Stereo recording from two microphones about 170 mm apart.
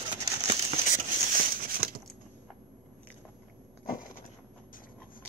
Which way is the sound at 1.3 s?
60° right (ahead or behind).